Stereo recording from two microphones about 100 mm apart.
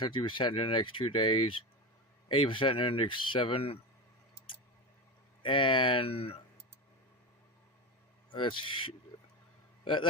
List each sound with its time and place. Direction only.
0.0 s speech: 55° left (ahead or behind)
5.4 s speech: 55° left (ahead or behind); by 6.4 s 75° left (ahead or behind)
8.3 s a man's voice: 55° left (ahead or behind)